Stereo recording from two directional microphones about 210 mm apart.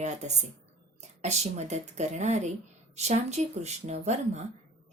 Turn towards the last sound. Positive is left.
turn(degrees=-35)  # may be behind; listen again after turning